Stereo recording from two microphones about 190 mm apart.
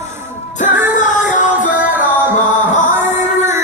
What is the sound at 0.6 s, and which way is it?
Music, 10° right (ahead or behind).